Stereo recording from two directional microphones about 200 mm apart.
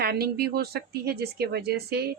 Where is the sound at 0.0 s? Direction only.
50° right (ahead or behind).